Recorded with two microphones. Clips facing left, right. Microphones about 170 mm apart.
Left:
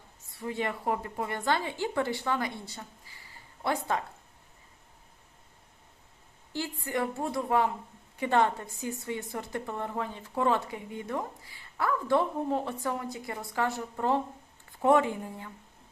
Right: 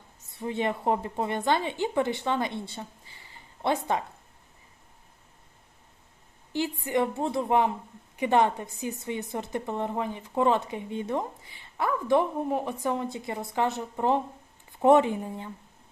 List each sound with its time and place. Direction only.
0.3 s a woman's voice: 20° right (ahead or behind)
6.5 s a woman's voice: 20° right (ahead or behind)